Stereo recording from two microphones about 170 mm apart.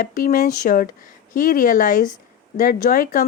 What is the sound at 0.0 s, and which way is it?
A woman's voice, 55° left (ahead or behind).